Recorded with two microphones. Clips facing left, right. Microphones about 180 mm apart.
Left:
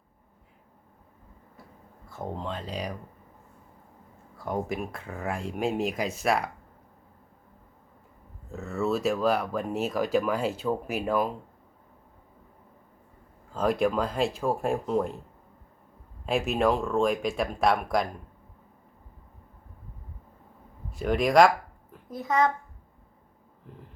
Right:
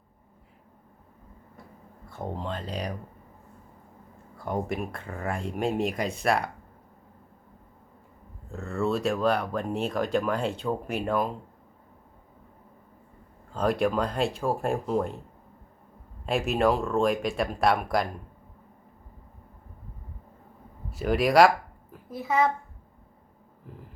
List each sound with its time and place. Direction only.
2.0 s speech: centre (ahead or behind)
4.4 s speech: centre (ahead or behind)
8.4 s speech: 5° left (ahead or behind)
13.5 s speech: centre (ahead or behind)
16.2 s speech: centre (ahead or behind)
20.9 s speech: 5° right (ahead or behind)